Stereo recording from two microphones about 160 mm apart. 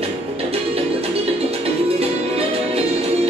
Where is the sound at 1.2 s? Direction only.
40° right (ahead or behind).